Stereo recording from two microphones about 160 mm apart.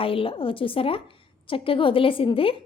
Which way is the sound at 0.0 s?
35° left (ahead or behind).